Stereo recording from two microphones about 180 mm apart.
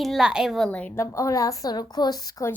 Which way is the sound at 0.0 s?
Centre (ahead or behind).